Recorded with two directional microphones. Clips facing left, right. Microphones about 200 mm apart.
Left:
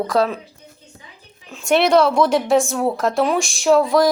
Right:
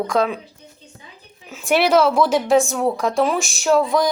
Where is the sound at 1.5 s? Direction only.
5° right (ahead or behind).